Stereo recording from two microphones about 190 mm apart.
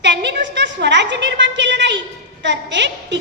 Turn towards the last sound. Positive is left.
turn(degrees=-70)  # may be behind; listen again after turning